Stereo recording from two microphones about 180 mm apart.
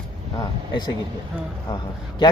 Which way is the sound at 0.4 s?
20° left (ahead or behind).